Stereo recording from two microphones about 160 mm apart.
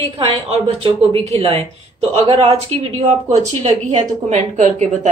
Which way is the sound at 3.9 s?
45° right (ahead or behind).